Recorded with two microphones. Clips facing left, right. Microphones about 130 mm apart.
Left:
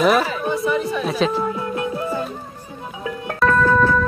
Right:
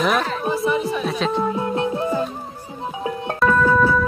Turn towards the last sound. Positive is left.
turn(degrees=-10)  # may be behind; listen again after turning